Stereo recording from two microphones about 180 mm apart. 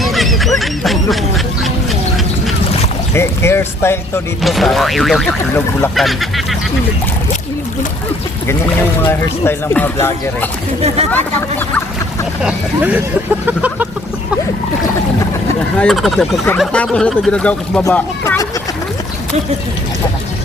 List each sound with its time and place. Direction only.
0.0 s goose: centre (ahead or behind)
3.2 s speech: 15° left (ahead or behind)
4.4 s speech: centre (ahead or behind)
8.4 s speech: 15° left (ahead or behind)
10.8 s speech: 35° right (ahead or behind)
12.4 s speech: 5° right (ahead or behind)
15.8 s speech: centre (ahead or behind)